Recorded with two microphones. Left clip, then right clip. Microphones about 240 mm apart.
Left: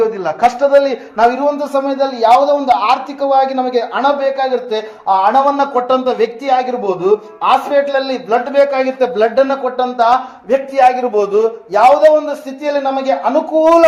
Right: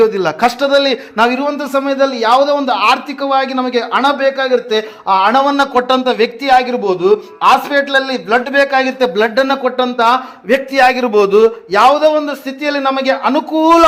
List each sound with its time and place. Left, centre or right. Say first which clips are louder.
0.0 s a man's voice: right 1 dB; right